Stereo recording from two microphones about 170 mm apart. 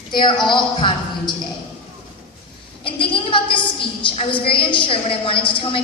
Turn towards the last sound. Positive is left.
turn(degrees=30)  # may be behind; listen again after turning